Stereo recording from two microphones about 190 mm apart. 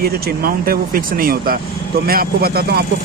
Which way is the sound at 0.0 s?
55° right (ahead or behind).